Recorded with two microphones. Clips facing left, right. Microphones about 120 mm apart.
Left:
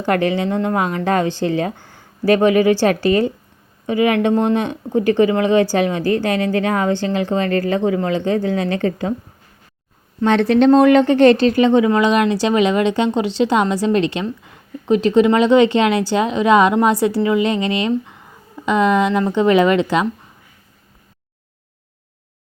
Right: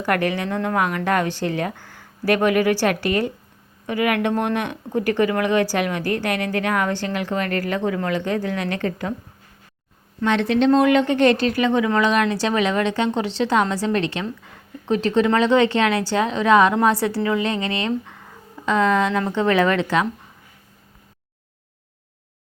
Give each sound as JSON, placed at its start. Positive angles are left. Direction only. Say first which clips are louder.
{"t": 0.0, "sound": "speech", "louder": "left 4 dB", "side_deg": 25}
{"t": 10.2, "sound": "a woman's voice", "louder": "left 5 dB", "side_deg": 35}